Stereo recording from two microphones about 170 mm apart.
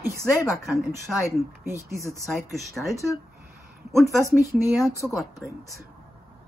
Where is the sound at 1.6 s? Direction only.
15° right (ahead or behind).